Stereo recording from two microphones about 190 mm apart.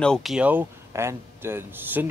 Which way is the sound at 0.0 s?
Centre (ahead or behind).